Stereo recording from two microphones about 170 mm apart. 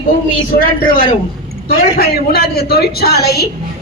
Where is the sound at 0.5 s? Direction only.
60° left (ahead or behind).